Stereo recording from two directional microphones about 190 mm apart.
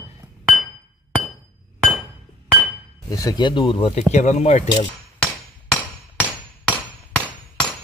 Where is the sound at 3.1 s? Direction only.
20° left (ahead or behind); by 4.8 s 35° left (ahead or behind).